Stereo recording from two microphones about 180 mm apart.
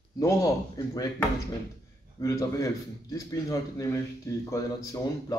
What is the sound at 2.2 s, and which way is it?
A man's voice, 20° left (ahead or behind).